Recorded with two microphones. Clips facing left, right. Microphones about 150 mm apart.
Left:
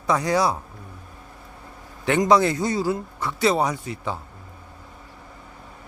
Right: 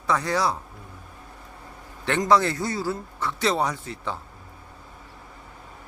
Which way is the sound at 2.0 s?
15° left (ahead or behind).